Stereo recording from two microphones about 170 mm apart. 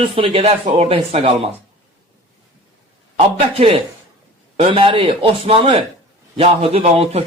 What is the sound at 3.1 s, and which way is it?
Speech, 30° right (ahead or behind).